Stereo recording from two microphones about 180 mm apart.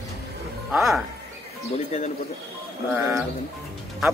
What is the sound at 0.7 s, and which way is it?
Speech, centre (ahead or behind).